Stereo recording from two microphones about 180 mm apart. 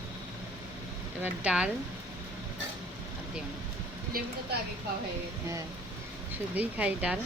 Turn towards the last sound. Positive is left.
turn(degrees=-5)  # may be behind; listen again after turning